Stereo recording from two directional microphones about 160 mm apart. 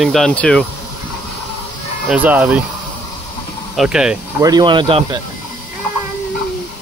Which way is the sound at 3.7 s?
5° right (ahead or behind).